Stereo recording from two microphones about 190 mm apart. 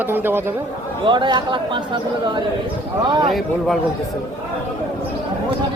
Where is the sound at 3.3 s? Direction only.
Centre (ahead or behind).